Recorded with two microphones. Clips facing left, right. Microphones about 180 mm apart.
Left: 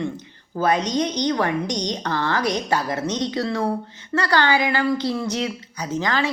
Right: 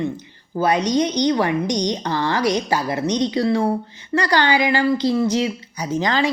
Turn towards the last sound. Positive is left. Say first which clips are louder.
# right 3 dB
turn(degrees=-15)  # may be behind; listen again after turning